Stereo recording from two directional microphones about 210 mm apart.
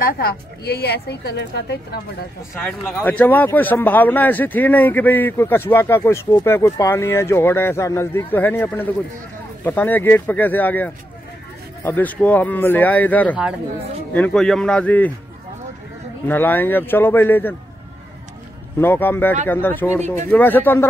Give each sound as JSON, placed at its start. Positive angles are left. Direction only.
{"t": 0.0, "sound": "a woman's voice", "side_deg": 45}
{"t": 2.8, "sound": "speech", "side_deg": 5}
{"t": 16.3, "sound": "speech", "side_deg": 10}
{"t": 18.8, "sound": "speech", "side_deg": 10}